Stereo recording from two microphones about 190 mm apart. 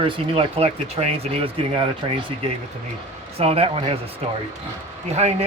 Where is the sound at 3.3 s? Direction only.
30° right (ahead or behind).